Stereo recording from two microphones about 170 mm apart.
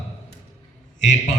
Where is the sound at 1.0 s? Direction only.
45° left (ahead or behind).